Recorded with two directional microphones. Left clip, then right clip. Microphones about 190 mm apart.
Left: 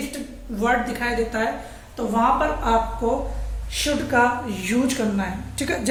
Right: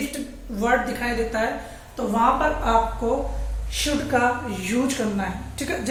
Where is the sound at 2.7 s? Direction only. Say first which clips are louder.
Even; 30° left (ahead or behind); by 5.9 s 50° left (ahead or behind).